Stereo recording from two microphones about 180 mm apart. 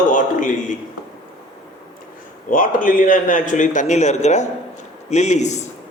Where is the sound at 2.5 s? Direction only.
50° left (ahead or behind).